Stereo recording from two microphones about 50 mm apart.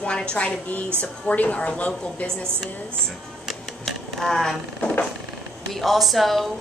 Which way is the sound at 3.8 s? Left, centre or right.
Centre.